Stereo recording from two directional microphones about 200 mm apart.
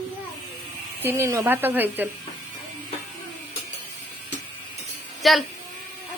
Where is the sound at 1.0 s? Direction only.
10° right (ahead or behind).